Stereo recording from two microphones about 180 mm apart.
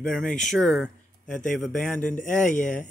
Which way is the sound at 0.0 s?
5° left (ahead or behind).